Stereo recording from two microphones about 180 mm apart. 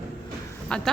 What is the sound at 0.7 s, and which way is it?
Speech, 5° left (ahead or behind).